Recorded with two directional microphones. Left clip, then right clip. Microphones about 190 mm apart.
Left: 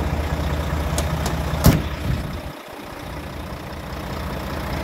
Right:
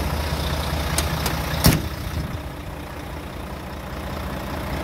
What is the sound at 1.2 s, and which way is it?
Vehicle, 45° left (ahead or behind).